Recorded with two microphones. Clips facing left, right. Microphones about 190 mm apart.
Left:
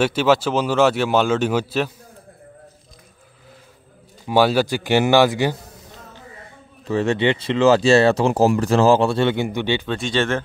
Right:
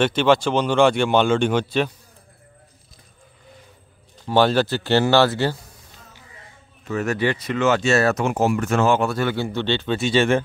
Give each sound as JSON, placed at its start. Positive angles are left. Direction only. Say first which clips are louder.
{"t": 0.0, "sound": "speech", "louder": "even", "side_deg": 5}
{"t": 4.3, "sound": "speech", "louder": "left 1 dB", "side_deg": 10}
{"t": 6.8, "sound": "speech", "louder": "left 3 dB", "side_deg": 30}
{"t": 9.8, "sound": "speech", "louder": "right 3 dB", "side_deg": -5}